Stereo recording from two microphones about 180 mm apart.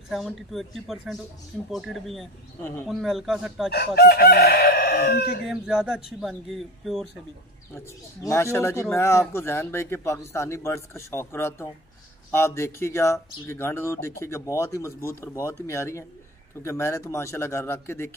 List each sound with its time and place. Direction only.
0.1 s speech: centre (ahead or behind)
2.6 s speech: 10° left (ahead or behind)
2.9 s speech: centre (ahead or behind)
3.7 s chicken: 60° left (ahead or behind)
5.5 s speech: 5° right (ahead or behind)
7.7 s speech: 15° left (ahead or behind)